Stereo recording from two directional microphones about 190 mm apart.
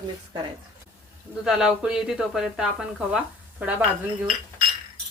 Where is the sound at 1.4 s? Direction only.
5° right (ahead or behind).